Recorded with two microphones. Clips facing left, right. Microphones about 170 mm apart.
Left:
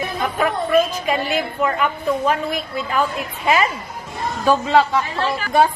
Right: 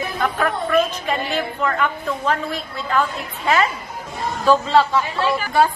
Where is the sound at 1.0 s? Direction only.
10° left (ahead or behind).